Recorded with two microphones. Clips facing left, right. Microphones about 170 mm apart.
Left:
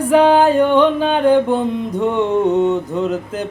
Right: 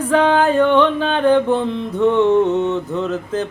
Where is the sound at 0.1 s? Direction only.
15° left (ahead or behind).